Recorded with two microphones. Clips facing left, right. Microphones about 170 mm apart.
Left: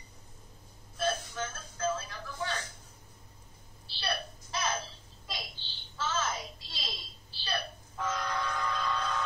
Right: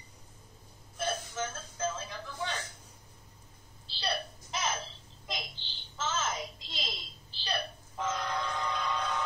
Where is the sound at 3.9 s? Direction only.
20° right (ahead or behind).